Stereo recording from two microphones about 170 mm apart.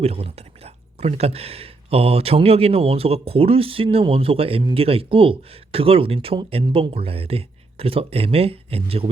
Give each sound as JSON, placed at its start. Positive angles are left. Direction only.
{"t": 0.0, "sound": "speech", "side_deg": -35}